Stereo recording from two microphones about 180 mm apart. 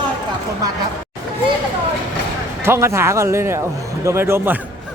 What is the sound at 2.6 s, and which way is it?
Speech, 15° right (ahead or behind).